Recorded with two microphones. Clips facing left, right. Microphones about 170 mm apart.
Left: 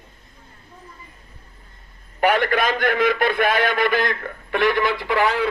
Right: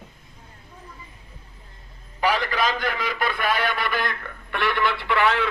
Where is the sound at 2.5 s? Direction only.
50° left (ahead or behind).